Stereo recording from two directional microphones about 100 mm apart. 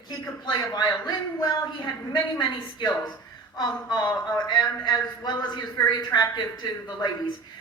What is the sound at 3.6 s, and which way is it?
A man's voice, 45° left (ahead or behind).